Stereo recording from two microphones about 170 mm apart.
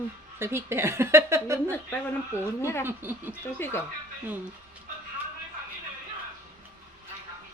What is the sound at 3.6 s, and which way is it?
Speech, 15° left (ahead or behind).